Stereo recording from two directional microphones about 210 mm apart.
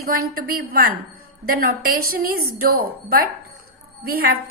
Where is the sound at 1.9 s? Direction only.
90° right.